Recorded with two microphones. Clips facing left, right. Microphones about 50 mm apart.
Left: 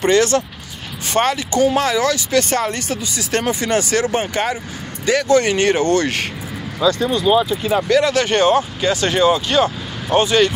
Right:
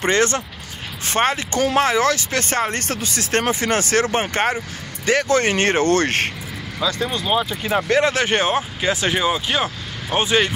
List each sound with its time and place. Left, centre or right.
0.0 s speech: right
2.9 s speech: right
6.9 s speech: right
7.6 s speech: right